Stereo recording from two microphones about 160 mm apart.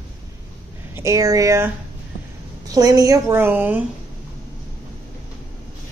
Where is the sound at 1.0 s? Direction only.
20° right (ahead or behind).